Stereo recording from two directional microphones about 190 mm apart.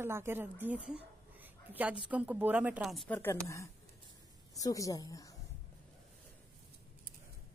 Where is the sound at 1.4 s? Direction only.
10° right (ahead or behind).